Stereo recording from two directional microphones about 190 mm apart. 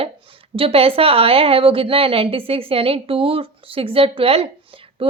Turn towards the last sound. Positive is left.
turn(degrees=-30)  # may be behind; listen again after turning